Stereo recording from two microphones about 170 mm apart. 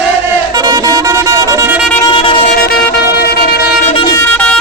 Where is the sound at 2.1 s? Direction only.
30° left (ahead or behind).